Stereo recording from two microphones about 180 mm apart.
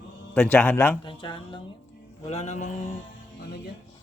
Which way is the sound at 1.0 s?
30° left (ahead or behind).